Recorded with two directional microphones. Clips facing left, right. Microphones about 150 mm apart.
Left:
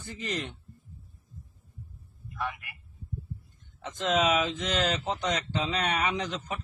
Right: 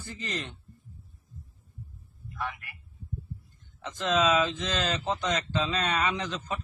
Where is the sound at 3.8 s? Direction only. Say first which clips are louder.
Even; 20° left (ahead or behind).